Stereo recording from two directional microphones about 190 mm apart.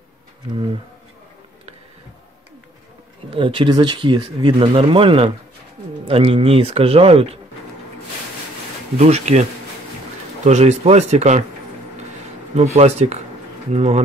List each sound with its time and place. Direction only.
3.3 s speech: 25° right (ahead or behind)
8.9 s speech: 35° right (ahead or behind)
12.7 s speech: 35° right (ahead or behind)